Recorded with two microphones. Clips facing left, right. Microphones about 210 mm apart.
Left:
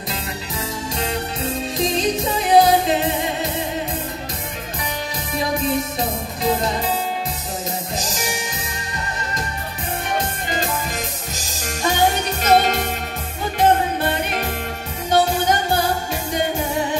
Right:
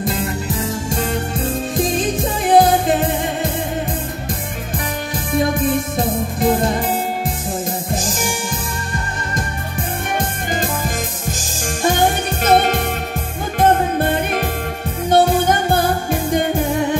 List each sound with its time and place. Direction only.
0.0 s music: 50° right (ahead or behind)
5.3 s music: 50° right (ahead or behind)
7.9 s music: 50° right (ahead or behind)
10.1 s music: 50° right (ahead or behind)